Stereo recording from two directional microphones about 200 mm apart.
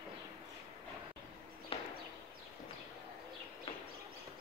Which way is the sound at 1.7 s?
25° left (ahead or behind).